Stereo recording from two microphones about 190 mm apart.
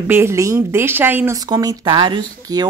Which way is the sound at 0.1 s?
15° right (ahead or behind).